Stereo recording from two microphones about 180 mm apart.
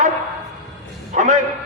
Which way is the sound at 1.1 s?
40° right (ahead or behind).